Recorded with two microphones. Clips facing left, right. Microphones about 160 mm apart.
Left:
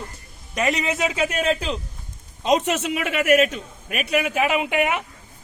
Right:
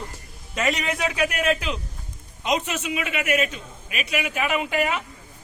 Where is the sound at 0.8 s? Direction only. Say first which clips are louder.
Left 2 dB; 20° left (ahead or behind).